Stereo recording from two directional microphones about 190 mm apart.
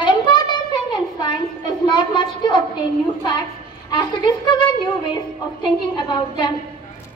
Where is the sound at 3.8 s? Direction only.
25° left (ahead or behind).